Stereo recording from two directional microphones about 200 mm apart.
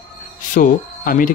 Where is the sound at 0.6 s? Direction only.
45° left (ahead or behind).